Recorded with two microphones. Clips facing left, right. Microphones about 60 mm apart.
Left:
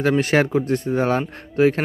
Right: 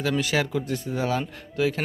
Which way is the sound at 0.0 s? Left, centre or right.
Left.